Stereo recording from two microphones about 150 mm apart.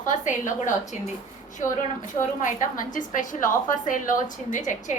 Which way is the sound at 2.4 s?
60° left (ahead or behind).